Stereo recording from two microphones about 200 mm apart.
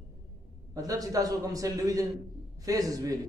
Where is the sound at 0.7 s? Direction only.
15° right (ahead or behind).